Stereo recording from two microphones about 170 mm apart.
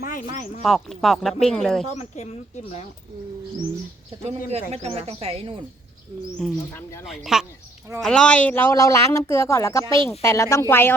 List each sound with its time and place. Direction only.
0.0 s speech: 50° left (ahead or behind)
0.6 s speech: centre (ahead or behind)
1.9 s speech: 40° left (ahead or behind)
4.2 s speech: 40° right (ahead or behind)
6.4 s speech: centre (ahead or behind)